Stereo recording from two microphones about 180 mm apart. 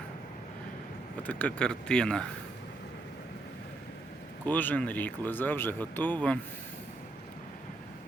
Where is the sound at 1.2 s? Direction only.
10° left (ahead or behind).